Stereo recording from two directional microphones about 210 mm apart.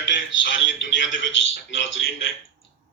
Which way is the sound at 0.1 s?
60° left (ahead or behind).